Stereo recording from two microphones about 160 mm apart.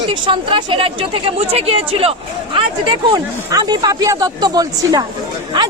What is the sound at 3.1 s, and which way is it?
Speech, 25° right (ahead or behind).